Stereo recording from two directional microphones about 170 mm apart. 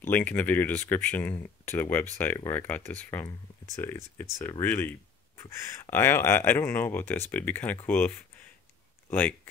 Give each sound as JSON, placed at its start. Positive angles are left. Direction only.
{"t": 0.0, "sound": "speech", "side_deg": 10}